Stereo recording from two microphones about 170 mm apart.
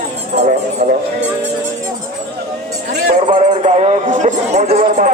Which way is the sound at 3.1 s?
45° right (ahead or behind).